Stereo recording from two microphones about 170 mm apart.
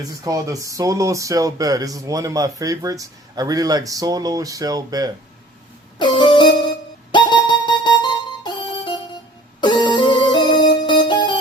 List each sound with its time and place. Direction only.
0.3 s speech: 20° right (ahead or behind)
6.0 s music: 25° left (ahead or behind)